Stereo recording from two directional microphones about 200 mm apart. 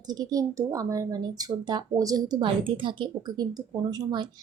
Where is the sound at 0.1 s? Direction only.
20° right (ahead or behind).